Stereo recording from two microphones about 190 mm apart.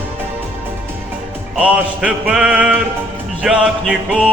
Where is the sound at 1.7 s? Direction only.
5° right (ahead or behind).